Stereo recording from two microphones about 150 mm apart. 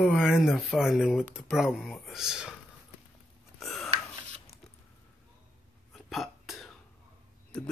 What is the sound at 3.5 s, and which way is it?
Burping, centre (ahead or behind).